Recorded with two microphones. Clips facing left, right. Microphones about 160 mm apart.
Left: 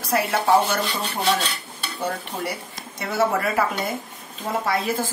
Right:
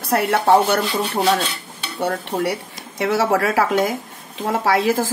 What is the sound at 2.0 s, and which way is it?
A man's voice, 70° right (ahead or behind).